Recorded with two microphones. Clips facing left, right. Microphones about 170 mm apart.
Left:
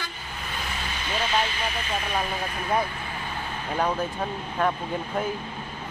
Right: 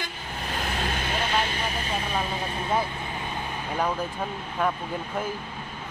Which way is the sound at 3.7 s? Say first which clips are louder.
Left 2 dB; 10° left (ahead or behind).